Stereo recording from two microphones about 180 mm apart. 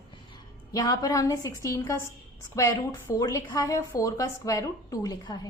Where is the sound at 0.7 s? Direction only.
20° left (ahead or behind).